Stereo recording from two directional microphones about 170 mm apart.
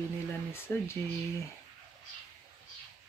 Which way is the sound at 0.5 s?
15° left (ahead or behind).